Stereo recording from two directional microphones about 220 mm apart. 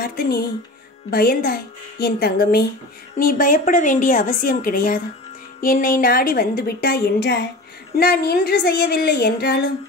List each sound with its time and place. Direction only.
0.0 s a woman's voice: 45° left (ahead or behind)